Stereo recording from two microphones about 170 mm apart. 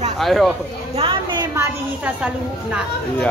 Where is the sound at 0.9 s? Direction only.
30° right (ahead or behind).